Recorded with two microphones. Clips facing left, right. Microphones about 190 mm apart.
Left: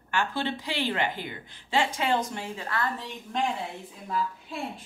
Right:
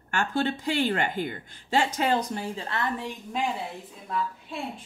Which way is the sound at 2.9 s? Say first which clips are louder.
Right 1 dB; 10° right (ahead or behind).